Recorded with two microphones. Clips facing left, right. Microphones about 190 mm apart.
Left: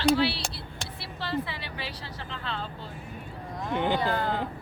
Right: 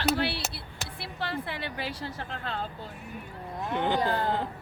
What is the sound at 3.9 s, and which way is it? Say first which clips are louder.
Speech: even; 20° right (ahead or behind).